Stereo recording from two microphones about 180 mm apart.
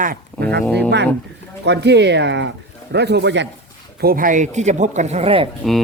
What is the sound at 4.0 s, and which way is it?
Speech, 55° right (ahead or behind).